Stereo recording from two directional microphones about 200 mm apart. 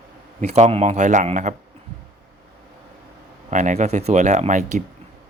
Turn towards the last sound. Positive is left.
turn(degrees=-35)  # may be behind; listen again after turning